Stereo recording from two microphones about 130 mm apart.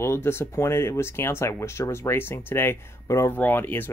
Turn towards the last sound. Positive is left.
turn(degrees=15)  # may be behind; listen again after turning